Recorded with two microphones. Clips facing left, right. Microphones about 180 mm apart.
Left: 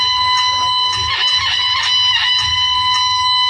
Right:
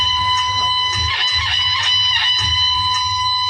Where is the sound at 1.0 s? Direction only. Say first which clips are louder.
Left 2 dB; 45° right (ahead or behind).